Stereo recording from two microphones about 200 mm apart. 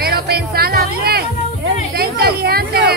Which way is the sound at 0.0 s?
50° right (ahead or behind).